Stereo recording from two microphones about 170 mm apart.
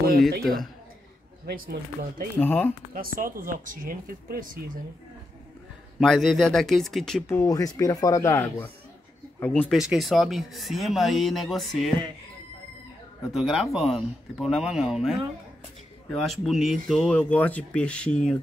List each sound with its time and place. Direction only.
0.4 s speech: centre (ahead or behind)
1.4 s speech: 65° right (ahead or behind)
2.3 s speech: 10° left (ahead or behind)
2.9 s speech: 55° right (ahead or behind)
5.9 s speech: centre (ahead or behind)
7.2 s speech: 15° left (ahead or behind)
9.8 s speech: centre (ahead or behind)
13.3 s speech: centre (ahead or behind)